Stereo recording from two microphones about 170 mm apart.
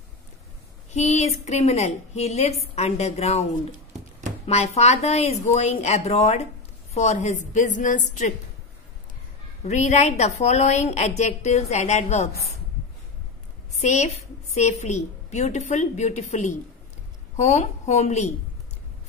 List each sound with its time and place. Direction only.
0.9 s a woman's voice: 40° left (ahead or behind)
4.5 s a woman's voice: 40° left (ahead or behind)
9.6 s a woman's voice: 45° left (ahead or behind)
13.7 s a woman's voice: 45° left (ahead or behind)